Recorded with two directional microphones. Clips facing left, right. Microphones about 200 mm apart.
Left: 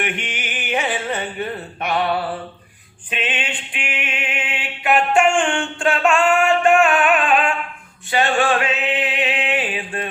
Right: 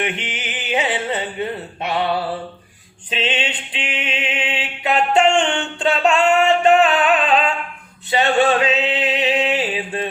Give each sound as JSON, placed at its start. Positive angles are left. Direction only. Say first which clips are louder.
{"t": 0.0, "sound": "speech", "louder": "right 1 dB", "side_deg": -20}
{"t": 3.1, "sound": "a sound", "louder": "right 3 dB", "side_deg": -25}
{"t": 8.1, "sound": "music", "louder": "right 2 dB", "side_deg": -20}